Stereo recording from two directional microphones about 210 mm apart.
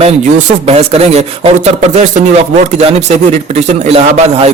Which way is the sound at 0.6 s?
30° right (ahead or behind).